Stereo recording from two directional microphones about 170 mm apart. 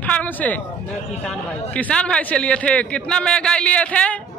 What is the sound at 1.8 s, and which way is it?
A man's voice, 5° left (ahead or behind).